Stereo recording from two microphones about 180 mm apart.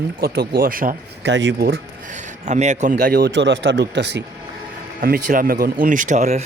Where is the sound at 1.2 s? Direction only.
80° right; by 1.8 s 60° right (ahead or behind).